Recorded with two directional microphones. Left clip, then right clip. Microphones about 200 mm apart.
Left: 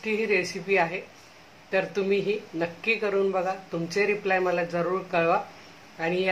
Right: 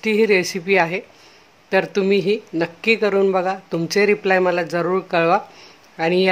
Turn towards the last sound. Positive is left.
turn(degrees=-50)  # may be behind; listen again after turning